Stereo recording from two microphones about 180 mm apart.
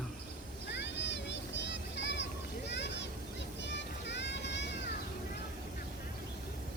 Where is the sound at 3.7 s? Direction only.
75° left (ahead or behind).